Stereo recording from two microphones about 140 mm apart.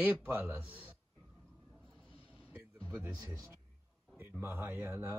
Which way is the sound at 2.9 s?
10° right (ahead or behind).